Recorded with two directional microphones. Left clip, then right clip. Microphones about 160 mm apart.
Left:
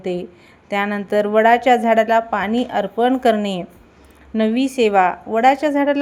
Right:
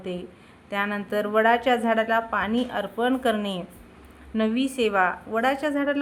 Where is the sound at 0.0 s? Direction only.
30° left (ahead or behind).